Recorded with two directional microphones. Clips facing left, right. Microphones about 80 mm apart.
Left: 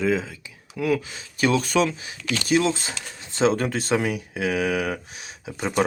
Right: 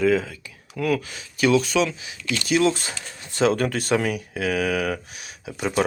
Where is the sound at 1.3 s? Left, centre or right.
Left.